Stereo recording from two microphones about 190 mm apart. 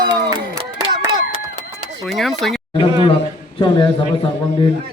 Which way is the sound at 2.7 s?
30° left (ahead or behind).